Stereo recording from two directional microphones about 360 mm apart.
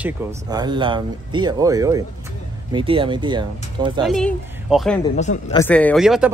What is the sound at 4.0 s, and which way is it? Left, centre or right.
Speech, centre.